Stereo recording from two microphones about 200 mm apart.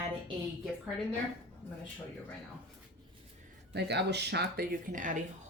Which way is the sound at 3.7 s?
55° right (ahead or behind).